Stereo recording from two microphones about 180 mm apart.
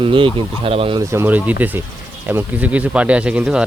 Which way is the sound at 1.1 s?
10° right (ahead or behind).